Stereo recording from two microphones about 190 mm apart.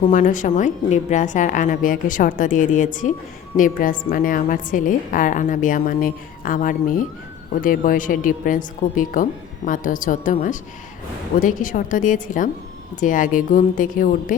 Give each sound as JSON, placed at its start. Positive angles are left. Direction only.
{"t": 0.1, "sound": "a woman's voice", "side_deg": 45}
{"t": 11.3, "sound": "a woman's voice", "side_deg": 45}